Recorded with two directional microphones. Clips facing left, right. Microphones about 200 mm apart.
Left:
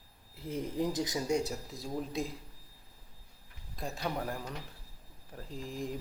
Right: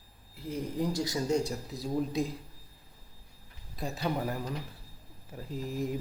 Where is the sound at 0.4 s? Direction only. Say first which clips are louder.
Right 1 dB; 25° left (ahead or behind).